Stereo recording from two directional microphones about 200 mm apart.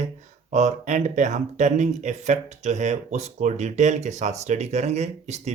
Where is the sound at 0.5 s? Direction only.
35° right (ahead or behind).